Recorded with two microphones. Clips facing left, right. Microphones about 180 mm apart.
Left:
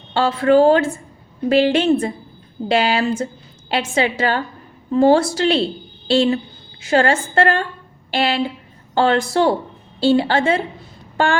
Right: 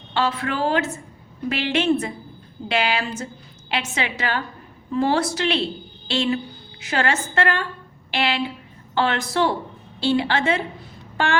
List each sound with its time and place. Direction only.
0.1 s a woman's voice: 30° left (ahead or behind)